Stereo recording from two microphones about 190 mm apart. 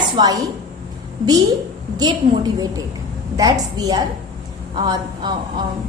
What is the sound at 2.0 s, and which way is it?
A woman's voice, 20° right (ahead or behind).